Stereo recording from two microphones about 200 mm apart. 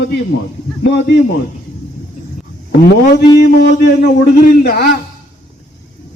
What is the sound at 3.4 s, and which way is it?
A man's voice, 55° left (ahead or behind).